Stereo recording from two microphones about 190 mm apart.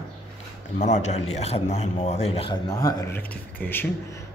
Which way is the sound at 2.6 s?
20° left (ahead or behind).